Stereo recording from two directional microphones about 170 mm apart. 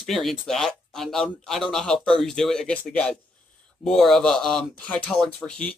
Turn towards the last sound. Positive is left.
turn(degrees=5)  # may be behind; listen again after turning